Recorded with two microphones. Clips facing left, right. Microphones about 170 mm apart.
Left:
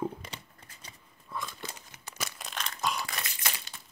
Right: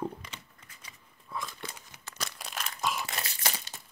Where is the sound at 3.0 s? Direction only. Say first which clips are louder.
Right 1 dB; 25° right (ahead or behind).